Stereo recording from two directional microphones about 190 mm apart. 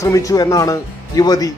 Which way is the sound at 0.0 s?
15° left (ahead or behind).